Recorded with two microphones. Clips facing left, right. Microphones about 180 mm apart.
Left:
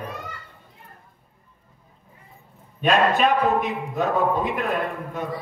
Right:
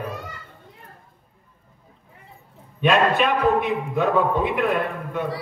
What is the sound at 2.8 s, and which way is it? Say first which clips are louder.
A man's voice: even; 40° left (ahead or behind).